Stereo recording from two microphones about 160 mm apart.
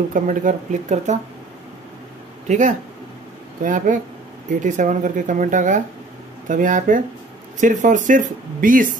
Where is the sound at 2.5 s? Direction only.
50° right (ahead or behind).